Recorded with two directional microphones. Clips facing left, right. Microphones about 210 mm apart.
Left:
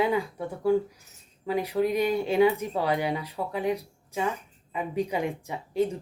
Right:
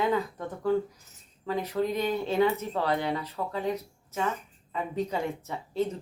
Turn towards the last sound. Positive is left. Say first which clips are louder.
# left 3 dB
turn(degrees=15)  # may be behind; listen again after turning